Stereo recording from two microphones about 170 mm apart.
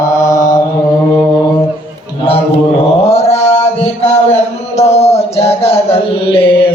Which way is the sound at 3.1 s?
35° left (ahead or behind).